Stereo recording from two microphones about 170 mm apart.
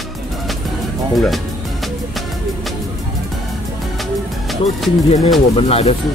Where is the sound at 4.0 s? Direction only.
Centre (ahead or behind).